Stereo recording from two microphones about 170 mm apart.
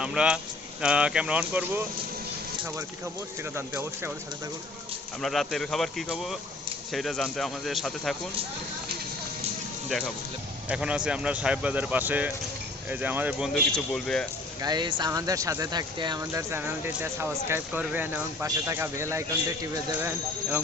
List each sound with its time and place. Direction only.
0.0 s speech: 5° right (ahead or behind)
3.5 s speech: 15° right (ahead or behind)
5.2 s speech: centre (ahead or behind)
10.7 s speech: 5° right (ahead or behind)
13.5 s speech: 5° left (ahead or behind)
14.6 s speech: 25° right (ahead or behind)